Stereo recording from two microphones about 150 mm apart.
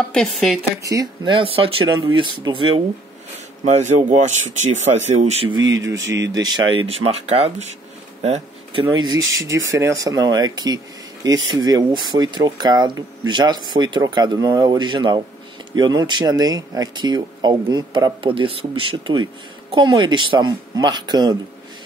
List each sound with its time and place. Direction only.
0.1 s speech: 5° left (ahead or behind)
0.8 s speech: 25° right (ahead or behind)
1.3 s speech: 35° right (ahead or behind)
3.6 s speech: 50° right (ahead or behind)
5.7 s speech: 25° right (ahead or behind); by 7.6 s 45° right (ahead or behind)
8.2 s a sound: 40° right (ahead or behind)
9.5 s speech: 20° right (ahead or behind)